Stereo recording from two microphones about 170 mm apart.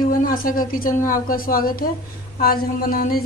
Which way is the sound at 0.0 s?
55° left (ahead or behind).